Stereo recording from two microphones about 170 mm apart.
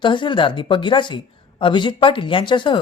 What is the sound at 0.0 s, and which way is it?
A woman's voice, 30° left (ahead or behind).